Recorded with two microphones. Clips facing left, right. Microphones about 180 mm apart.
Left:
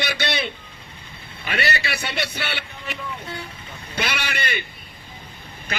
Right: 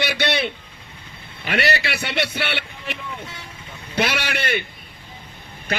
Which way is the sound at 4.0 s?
60° right (ahead or behind).